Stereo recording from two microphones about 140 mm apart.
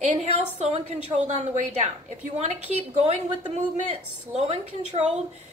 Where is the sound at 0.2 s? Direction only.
50° right (ahead or behind).